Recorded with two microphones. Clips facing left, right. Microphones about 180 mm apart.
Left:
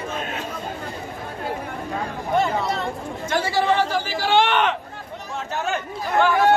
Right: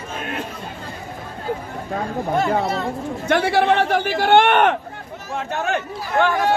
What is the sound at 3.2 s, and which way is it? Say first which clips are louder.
Speech: right 4 dB; 60° right (ahead or behind).